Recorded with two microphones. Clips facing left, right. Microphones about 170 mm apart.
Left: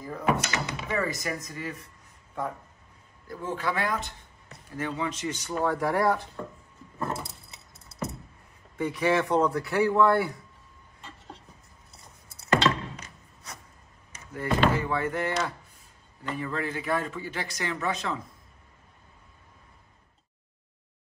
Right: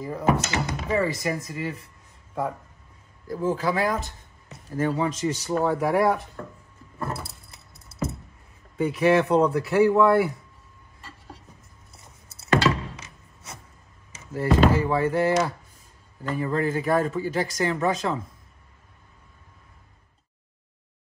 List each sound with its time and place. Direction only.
0.0 s speech: 30° right (ahead or behind)
3.3 s speech: 35° right (ahead or behind)
5.6 s speech: centre (ahead or behind)
7.0 s vehicle: 5° right (ahead or behind)
8.7 s speech: 25° right (ahead or behind)
9.8 s speech: centre (ahead or behind)
10.1 s speech: 25° right (ahead or behind)
12.4 s a sound: 5° right (ahead or behind)
14.3 s speech: 30° right (ahead or behind)
16.3 s speech: 35° right (ahead or behind)